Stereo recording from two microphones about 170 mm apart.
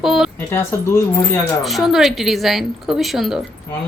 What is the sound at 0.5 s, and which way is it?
Speech, 15° left (ahead or behind).